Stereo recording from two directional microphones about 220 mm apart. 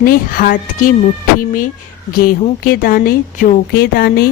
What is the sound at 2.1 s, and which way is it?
Speech, 40° left (ahead or behind).